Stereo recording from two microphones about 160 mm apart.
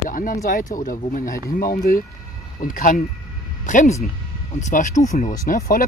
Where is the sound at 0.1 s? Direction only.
60° left (ahead or behind).